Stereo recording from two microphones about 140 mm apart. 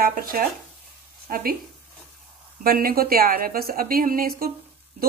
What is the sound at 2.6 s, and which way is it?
A woman's voice, 90° right.